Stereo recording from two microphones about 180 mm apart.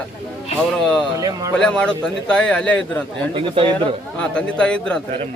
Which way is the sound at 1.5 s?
5° left (ahead or behind).